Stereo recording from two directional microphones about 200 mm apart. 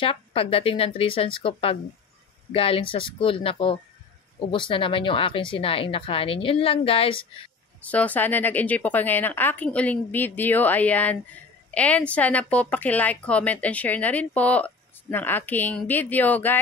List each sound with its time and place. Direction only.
0.0 s speech: 30° left (ahead or behind)
7.8 s a woman's voice: 5° left (ahead or behind)